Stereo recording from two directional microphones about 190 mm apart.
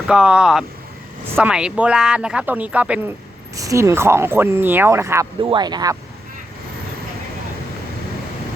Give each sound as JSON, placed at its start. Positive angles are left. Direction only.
{"t": 0.1, "sound": "speech", "side_deg": -5}
{"t": 3.5, "sound": "speech", "side_deg": -15}